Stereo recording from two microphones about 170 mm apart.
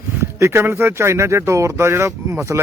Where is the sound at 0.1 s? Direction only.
15° right (ahead or behind).